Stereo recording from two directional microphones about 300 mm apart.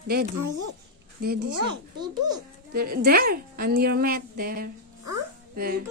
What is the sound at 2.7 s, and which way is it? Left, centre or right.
A woman's voice, right.